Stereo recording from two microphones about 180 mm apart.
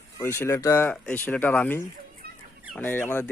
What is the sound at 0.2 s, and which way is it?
Speech, 15° left (ahead or behind).